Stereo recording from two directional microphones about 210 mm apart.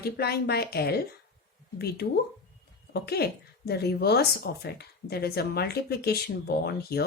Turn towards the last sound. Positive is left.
turn(degrees=50)  # may be behind; listen again after turning